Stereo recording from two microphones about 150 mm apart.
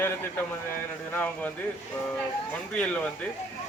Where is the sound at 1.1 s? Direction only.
10° left (ahead or behind).